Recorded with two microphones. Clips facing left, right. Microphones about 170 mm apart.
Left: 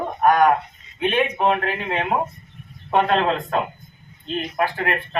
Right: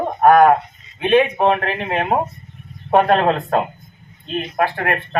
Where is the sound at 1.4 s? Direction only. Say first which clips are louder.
Right 3 dB; 55° right (ahead or behind).